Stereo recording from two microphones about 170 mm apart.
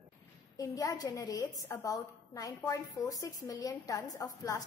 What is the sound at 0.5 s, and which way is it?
A woman's voice, 20° left (ahead or behind).